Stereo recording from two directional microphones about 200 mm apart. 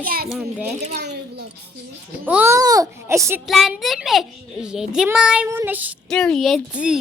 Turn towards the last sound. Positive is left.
turn(degrees=-5)  # may be behind; listen again after turning